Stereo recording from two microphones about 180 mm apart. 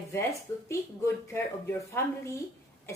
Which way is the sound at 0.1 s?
15° left (ahead or behind).